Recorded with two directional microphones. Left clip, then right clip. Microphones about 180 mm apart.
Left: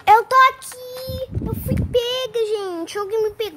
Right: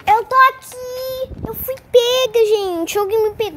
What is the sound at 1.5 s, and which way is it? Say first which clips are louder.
Child singing: right 2 dB; 15° left (ahead or behind).